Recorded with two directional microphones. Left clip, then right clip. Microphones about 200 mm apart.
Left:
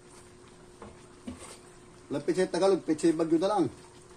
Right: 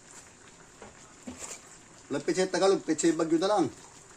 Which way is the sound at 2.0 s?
35° right (ahead or behind).